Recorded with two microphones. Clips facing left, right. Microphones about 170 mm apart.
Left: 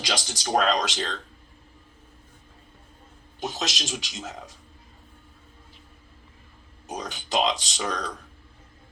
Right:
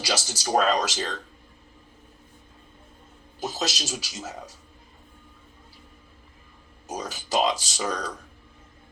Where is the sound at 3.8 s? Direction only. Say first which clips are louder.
Even; 40° right (ahead or behind).